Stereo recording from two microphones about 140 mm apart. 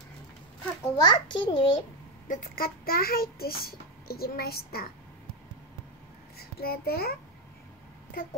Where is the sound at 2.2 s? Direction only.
75° left (ahead or behind); by 4.8 s 90° left.